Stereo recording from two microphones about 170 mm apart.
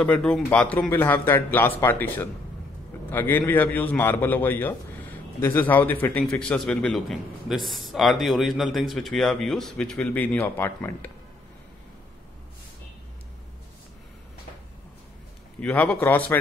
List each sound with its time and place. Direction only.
0.0 s a man's voice: 5° left (ahead or behind)
15.6 s a man's voice: 10° left (ahead or behind)